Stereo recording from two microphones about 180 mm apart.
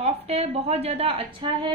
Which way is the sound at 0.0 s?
35° right (ahead or behind).